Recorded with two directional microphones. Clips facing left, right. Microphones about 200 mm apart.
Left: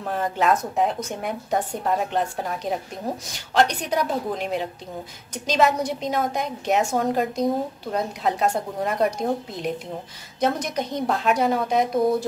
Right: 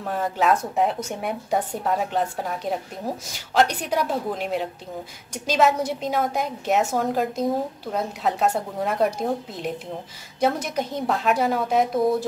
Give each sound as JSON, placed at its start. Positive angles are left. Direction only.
{"t": 0.0, "sound": "a woman's voice", "side_deg": 0}